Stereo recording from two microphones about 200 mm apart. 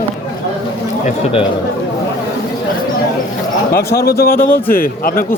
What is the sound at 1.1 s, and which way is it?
Speech, 30° left (ahead or behind).